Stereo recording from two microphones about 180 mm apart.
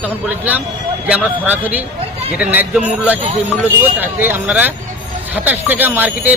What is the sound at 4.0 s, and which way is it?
Speech, 10° right (ahead or behind).